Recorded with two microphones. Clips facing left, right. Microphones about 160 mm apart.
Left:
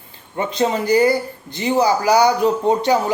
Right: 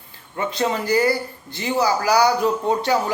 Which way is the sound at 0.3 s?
25° left (ahead or behind).